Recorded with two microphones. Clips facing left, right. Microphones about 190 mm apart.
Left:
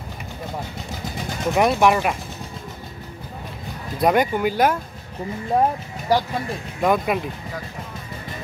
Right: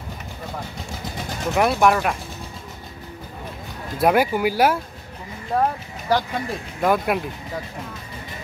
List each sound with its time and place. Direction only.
1.5 s speech: centre (ahead or behind)
4.0 s speech: 5° right (ahead or behind)
5.5 s speech: 15° left (ahead or behind)
6.8 s speech: 5° right (ahead or behind)